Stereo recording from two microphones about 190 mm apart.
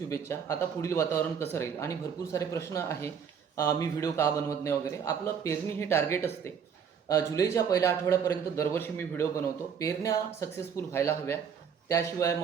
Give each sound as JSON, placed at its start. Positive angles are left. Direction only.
{"t": 0.1, "sound": "a man's voice", "side_deg": 15}